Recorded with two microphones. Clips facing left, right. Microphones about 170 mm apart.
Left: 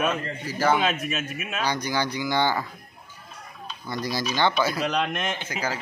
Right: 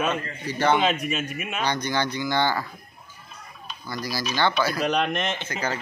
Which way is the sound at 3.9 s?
20° left (ahead or behind).